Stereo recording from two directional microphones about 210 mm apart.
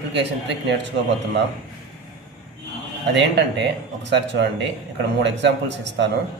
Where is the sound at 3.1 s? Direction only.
55° right (ahead or behind).